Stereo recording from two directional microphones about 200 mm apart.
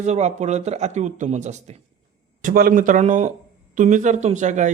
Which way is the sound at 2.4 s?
45° right (ahead or behind).